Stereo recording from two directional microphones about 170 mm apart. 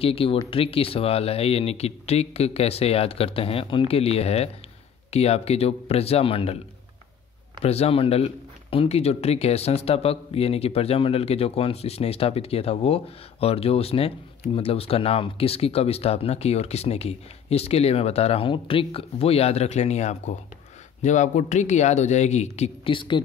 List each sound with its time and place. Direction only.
0.0 s speech: 35° left (ahead or behind)
7.6 s a man's voice: 40° left (ahead or behind)